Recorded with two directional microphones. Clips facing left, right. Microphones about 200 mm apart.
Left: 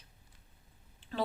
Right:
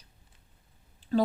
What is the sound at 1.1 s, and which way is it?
Speech, 40° right (ahead or behind).